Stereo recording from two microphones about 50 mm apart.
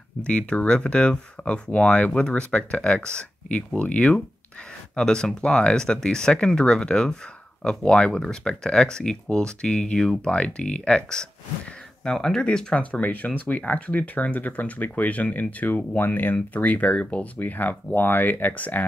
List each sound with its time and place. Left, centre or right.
0.2 s speech: left
12.7 s speech: left